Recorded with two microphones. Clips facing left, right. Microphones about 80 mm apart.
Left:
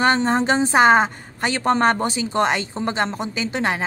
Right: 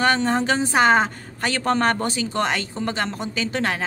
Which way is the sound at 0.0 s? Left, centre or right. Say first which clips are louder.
Left 2 dB; left.